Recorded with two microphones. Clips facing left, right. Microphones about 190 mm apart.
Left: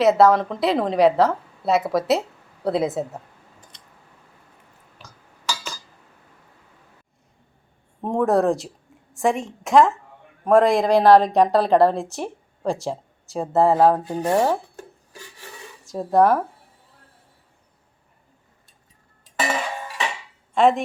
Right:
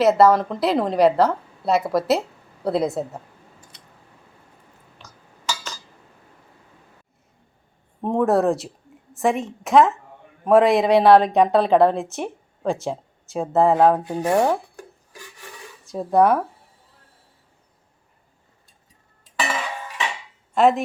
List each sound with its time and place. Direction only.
0.0 s a woman's voice: centre (ahead or behind)
8.0 s a woman's voice: centre (ahead or behind)
15.1 s filing: 30° left (ahead or behind)
15.8 s speech: centre (ahead or behind)
19.4 s a sound: 40° left (ahead or behind)
20.5 s speech: centre (ahead or behind)